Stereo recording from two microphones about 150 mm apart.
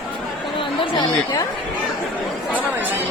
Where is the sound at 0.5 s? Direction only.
25° left (ahead or behind).